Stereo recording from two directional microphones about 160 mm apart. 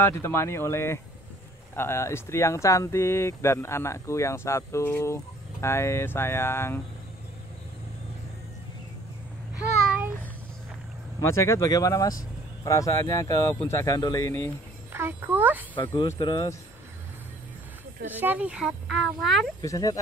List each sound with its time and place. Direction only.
0.0 s speech: 15° left (ahead or behind)
9.8 s a sound: 10° right (ahead or behind)
11.1 s speech: 20° left (ahead or behind)
14.9 s a child's voice: 15° right (ahead or behind)
15.9 s speech: 20° left (ahead or behind)
18.1 s speech: 10° right (ahead or behind)
19.6 s speech: 20° left (ahead or behind)